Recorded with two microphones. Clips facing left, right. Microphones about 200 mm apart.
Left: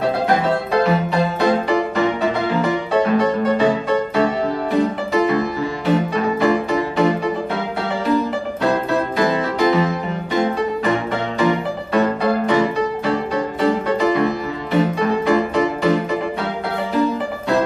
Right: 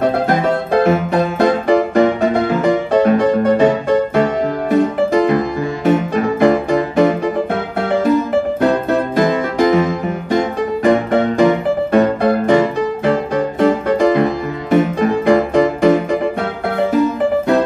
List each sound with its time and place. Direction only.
0.8 s music: 50° right (ahead or behind)
9.3 s music: 50° right (ahead or behind)